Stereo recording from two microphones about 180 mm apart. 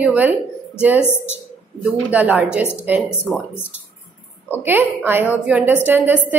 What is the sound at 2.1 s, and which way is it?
Speech, 10° right (ahead or behind).